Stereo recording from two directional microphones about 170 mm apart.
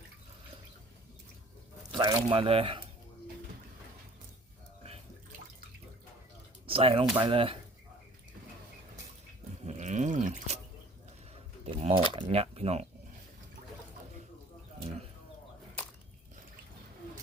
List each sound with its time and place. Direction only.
1.9 s speech: 30° right (ahead or behind)
6.7 s speech: 35° right (ahead or behind)
9.6 s drip: 45° right (ahead or behind)
11.6 s a sound: 35° right (ahead or behind)
12.3 s speech: 35° right (ahead or behind)